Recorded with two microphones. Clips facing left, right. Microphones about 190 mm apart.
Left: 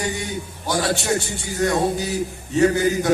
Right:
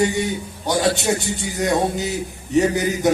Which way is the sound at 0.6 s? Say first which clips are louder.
Right 3 dB; 20° right (ahead or behind).